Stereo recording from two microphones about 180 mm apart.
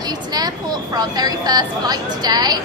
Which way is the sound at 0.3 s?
20° right (ahead or behind).